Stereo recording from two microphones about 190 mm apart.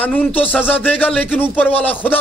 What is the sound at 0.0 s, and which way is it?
A man's voice, 10° left (ahead or behind).